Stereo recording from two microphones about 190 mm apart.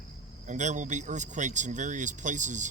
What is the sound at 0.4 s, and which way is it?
Speech, 40° right (ahead or behind).